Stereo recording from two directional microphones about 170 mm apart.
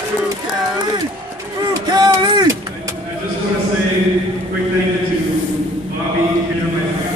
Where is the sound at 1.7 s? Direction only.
20° right (ahead or behind).